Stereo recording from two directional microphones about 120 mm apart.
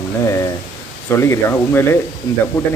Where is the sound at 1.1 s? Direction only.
25° left (ahead or behind).